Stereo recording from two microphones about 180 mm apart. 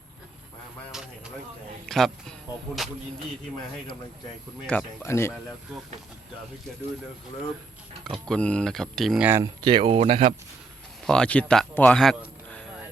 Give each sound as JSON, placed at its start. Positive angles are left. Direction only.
{"t": 0.9, "sound": "a sound", "side_deg": -5}
{"t": 1.9, "sound": "speech", "side_deg": 0}
{"t": 4.6, "sound": "speech", "side_deg": 5}
{"t": 8.0, "sound": "speech", "side_deg": 0}
{"t": 9.4, "sound": "speech", "side_deg": -25}
{"t": 11.0, "sound": "speech", "side_deg": 5}